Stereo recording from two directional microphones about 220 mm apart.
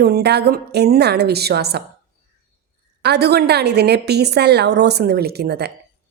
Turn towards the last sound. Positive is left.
turn(degrees=-45)  # may be behind; listen again after turning